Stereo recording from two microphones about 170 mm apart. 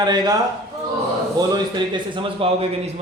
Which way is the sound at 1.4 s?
25° right (ahead or behind).